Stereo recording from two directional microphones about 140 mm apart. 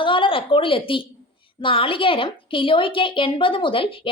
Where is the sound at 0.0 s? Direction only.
35° left (ahead or behind).